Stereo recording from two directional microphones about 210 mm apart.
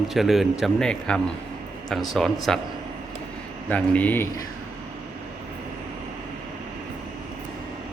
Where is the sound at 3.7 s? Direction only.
5° left (ahead or behind).